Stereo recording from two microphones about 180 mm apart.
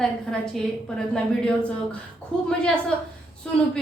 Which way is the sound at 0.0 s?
5° left (ahead or behind).